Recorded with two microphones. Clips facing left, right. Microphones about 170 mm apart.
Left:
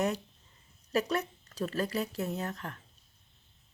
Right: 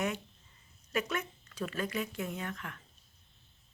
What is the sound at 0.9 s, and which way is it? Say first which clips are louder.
Speech: left 4 dB; 35° left (ahead or behind).